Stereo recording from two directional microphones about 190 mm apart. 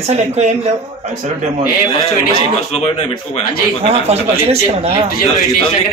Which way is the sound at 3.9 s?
35° right (ahead or behind).